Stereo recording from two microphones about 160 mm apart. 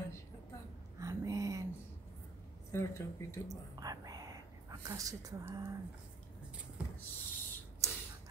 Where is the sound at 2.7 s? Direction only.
15° left (ahead or behind).